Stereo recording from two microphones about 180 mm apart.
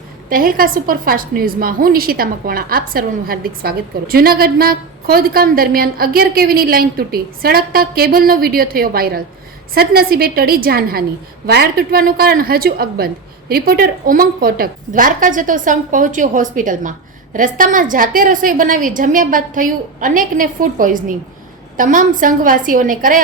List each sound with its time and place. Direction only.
0.3 s a woman's voice: 50° right (ahead or behind)